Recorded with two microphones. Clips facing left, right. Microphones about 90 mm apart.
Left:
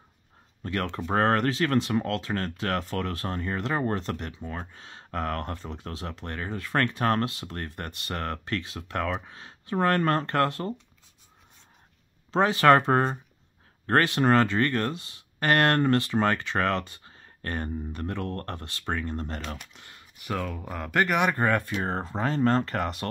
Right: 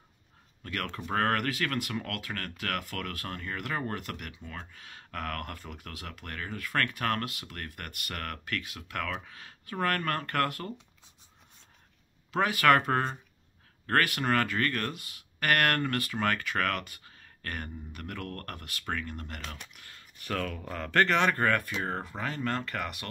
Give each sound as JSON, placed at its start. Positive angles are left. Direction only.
{"t": 0.6, "sound": "speech", "side_deg": 25}
{"t": 12.3, "sound": "speech", "side_deg": 30}